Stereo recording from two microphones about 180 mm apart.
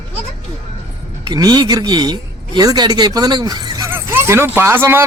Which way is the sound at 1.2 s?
20° right (ahead or behind).